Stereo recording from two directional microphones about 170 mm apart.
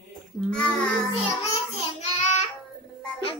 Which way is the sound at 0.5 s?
5° left (ahead or behind).